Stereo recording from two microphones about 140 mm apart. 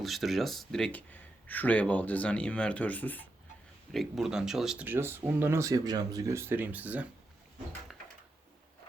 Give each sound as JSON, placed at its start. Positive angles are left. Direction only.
{"t": 0.0, "sound": "speech", "side_deg": 0}
{"t": 3.9, "sound": "speech", "side_deg": 0}